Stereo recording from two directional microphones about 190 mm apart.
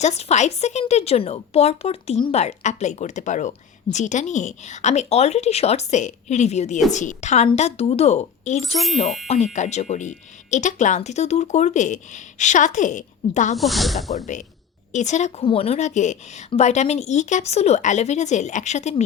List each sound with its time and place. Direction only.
0.0 s speech: 35° left (ahead or behind)
13.6 s speech: centre (ahead or behind)
14.9 s speech: 40° left (ahead or behind)